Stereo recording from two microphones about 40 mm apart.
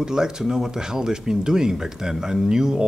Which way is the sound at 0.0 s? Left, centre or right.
Centre.